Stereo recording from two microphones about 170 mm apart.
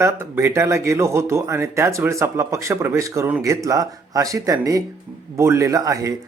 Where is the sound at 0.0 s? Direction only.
15° right (ahead or behind).